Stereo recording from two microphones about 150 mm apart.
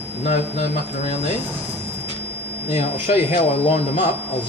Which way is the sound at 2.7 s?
60° left (ahead or behind).